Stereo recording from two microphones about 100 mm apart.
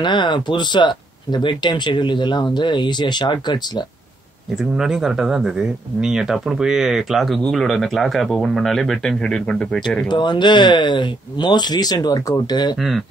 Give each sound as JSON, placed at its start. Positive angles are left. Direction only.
{"t": 0.0, "sound": "speech", "side_deg": 50}
{"t": 4.7, "sound": "speech", "side_deg": -5}
{"t": 10.0, "sound": "speech", "side_deg": 50}